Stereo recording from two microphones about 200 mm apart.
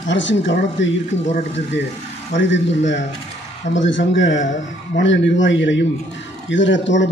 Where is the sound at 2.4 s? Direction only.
65° left (ahead or behind).